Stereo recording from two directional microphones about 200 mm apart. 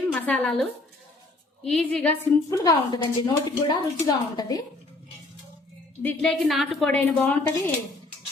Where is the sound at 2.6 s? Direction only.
20° left (ahead or behind).